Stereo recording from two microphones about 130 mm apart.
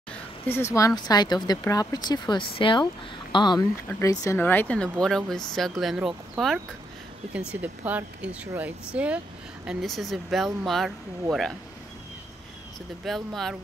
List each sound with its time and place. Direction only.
0.5 s speech: 20° left (ahead or behind); by 11.5 s centre (ahead or behind)
13.0 s speech: centre (ahead or behind)